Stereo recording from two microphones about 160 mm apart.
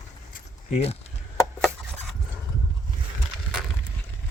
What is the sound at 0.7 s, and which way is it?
Speech, 40° left (ahead or behind).